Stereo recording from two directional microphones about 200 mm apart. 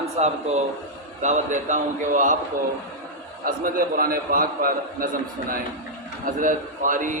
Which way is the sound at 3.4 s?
45° right (ahead or behind).